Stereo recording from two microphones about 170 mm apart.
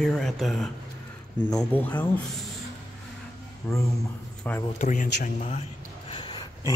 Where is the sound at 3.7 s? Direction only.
15° left (ahead or behind).